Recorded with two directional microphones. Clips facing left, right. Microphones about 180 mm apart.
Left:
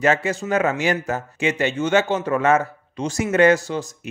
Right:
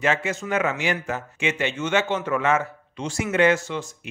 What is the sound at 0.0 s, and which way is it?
Speech, 40° left (ahead or behind).